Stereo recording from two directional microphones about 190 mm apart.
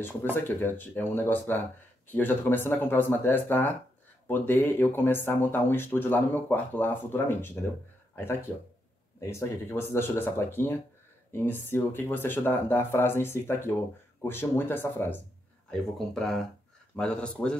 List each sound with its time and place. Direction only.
0.0 s speech: 10° left (ahead or behind)